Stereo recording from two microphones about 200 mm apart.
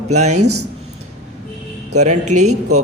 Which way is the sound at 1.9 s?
35° right (ahead or behind).